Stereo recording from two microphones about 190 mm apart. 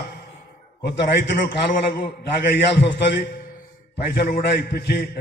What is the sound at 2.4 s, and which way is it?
Speech, 65° left (ahead or behind).